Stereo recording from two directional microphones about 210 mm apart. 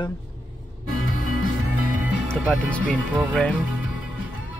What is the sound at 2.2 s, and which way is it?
Speech, 5° left (ahead or behind).